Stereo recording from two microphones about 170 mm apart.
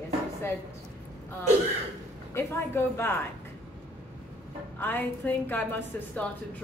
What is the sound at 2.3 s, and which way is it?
Speech, 15° left (ahead or behind).